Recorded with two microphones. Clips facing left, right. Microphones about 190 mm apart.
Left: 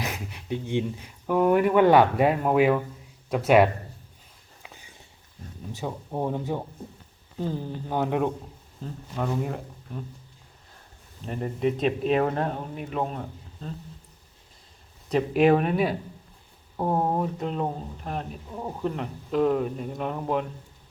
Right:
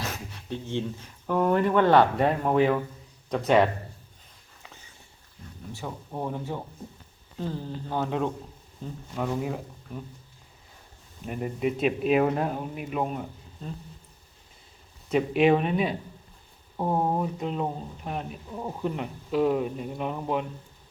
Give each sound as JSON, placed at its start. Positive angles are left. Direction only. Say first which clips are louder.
{"t": 0.0, "sound": "speech", "louder": "left 2 dB", "side_deg": 15}
{"t": 5.7, "sound": "speech", "louder": "left 4 dB", "side_deg": 20}
{"t": 9.1, "sound": "speech", "louder": "left 1 dB", "side_deg": -5}
{"t": 11.3, "sound": "speech", "louder": "left 2 dB", "side_deg": -10}
{"t": 15.1, "sound": "speech", "louder": "left 1 dB", "side_deg": 0}